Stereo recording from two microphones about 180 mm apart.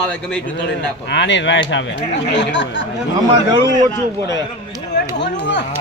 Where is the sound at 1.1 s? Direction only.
80° left.